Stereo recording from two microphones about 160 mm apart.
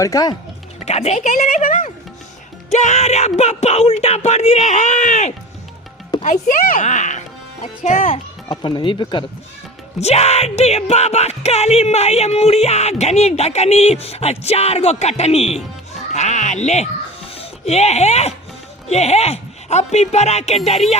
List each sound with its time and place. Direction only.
0.0 s speech: 25° left (ahead or behind)
0.8 s speech: 40° left (ahead or behind)
8.4 s music: 30° left (ahead or behind)
10.0 s music: 40° left (ahead or behind)
16.1 s speech: 45° left (ahead or behind)